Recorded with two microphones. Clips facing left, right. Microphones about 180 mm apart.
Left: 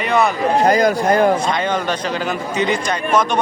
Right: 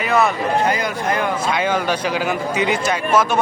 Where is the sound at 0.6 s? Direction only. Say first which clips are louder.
Left 6 dB; 40° left (ahead or behind).